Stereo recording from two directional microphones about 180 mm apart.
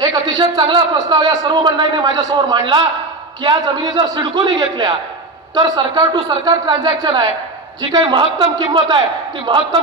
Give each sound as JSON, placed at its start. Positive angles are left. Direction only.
{"t": 0.0, "sound": "speech", "side_deg": -25}